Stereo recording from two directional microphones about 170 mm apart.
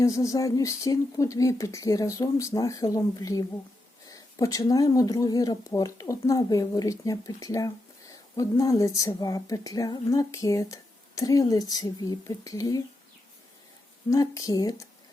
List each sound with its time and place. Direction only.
0.0 s a woman's voice: 20° left (ahead or behind)
14.1 s a woman's voice: 20° left (ahead or behind)